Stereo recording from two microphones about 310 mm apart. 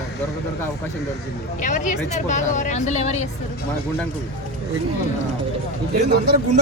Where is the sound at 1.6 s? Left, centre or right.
Left.